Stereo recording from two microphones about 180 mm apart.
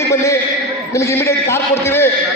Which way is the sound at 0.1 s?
15° left (ahead or behind).